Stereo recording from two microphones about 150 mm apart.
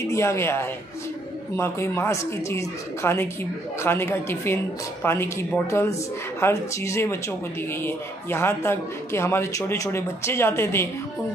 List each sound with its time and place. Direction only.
0.1 s speech: 20° left (ahead or behind)